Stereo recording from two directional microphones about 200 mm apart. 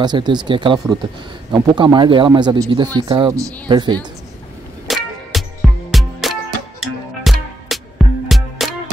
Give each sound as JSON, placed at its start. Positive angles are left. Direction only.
{"t": 0.0, "sound": "speech", "side_deg": -20}
{"t": 4.8, "sound": "music", "side_deg": 0}